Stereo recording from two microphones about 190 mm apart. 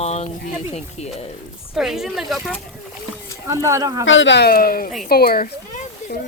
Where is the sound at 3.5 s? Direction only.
15° right (ahead or behind).